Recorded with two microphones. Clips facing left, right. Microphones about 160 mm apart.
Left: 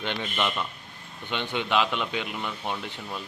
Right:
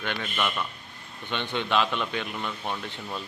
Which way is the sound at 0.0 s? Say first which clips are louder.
Left 1 dB; 20° left (ahead or behind).